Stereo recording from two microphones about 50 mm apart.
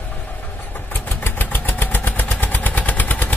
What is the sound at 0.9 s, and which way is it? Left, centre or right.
Vehicle, left.